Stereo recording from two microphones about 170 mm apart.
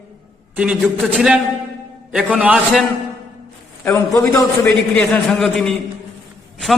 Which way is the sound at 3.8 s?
15° left (ahead or behind).